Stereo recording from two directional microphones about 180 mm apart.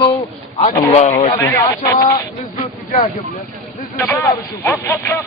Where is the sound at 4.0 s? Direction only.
15° left (ahead or behind).